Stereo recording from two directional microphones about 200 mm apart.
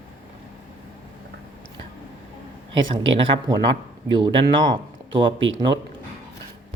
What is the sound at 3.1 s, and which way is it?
Speech, 25° right (ahead or behind).